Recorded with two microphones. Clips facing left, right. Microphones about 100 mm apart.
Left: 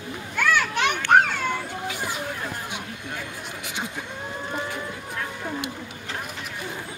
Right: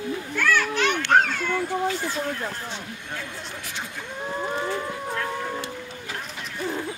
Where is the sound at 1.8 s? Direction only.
15° left (ahead or behind).